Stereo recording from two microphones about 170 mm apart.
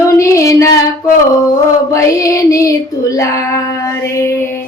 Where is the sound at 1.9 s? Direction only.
20° left (ahead or behind).